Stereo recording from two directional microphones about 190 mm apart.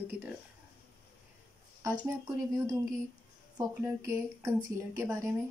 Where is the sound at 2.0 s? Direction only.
20° right (ahead or behind).